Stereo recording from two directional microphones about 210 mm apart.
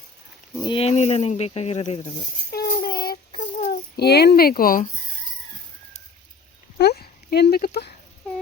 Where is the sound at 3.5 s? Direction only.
35° left (ahead or behind).